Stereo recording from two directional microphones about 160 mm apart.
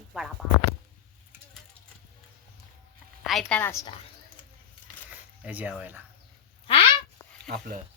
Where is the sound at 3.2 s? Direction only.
Centre (ahead or behind).